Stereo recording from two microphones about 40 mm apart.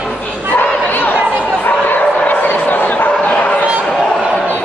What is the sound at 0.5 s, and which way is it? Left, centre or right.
Bow-wow, left.